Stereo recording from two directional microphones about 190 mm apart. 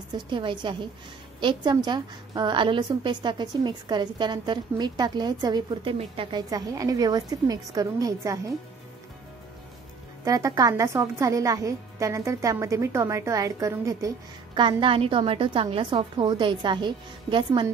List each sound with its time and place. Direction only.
0.3 s a woman's voice: 25° right (ahead or behind)
10.2 s a woman's voice: 15° right (ahead or behind)